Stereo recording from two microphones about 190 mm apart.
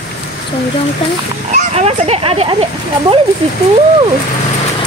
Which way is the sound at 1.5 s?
35° right (ahead or behind).